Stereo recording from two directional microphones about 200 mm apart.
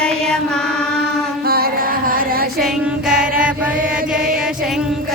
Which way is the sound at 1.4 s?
50° right (ahead or behind).